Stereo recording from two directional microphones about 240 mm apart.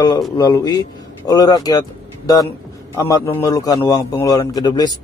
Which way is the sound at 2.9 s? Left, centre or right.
Centre.